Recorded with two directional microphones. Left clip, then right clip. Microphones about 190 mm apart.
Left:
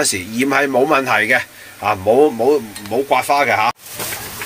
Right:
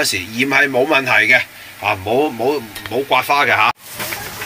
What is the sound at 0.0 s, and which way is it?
A man's voice, 35° left (ahead or behind).